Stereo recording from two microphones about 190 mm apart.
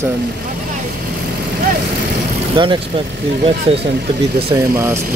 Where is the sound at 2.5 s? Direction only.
25° right (ahead or behind).